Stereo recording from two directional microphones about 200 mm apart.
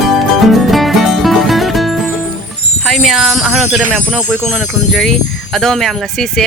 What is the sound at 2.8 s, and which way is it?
Speech, centre (ahead or behind).